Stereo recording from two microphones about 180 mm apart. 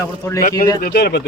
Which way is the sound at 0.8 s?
60° left (ahead or behind).